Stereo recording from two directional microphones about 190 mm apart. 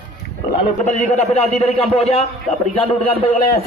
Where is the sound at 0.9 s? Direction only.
35° left (ahead or behind).